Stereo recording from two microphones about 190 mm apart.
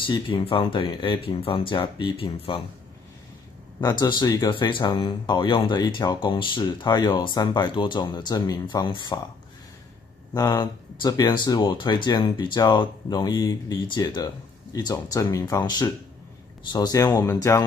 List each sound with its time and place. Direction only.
0.0 s speech: 25° left (ahead or behind)
3.8 s speech: 20° left (ahead or behind)
10.3 s speech: 20° left (ahead or behind)